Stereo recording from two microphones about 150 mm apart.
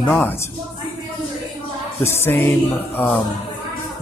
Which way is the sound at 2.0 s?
15° left (ahead or behind).